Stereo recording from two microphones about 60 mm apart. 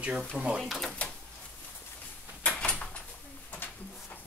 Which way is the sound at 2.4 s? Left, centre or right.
Centre.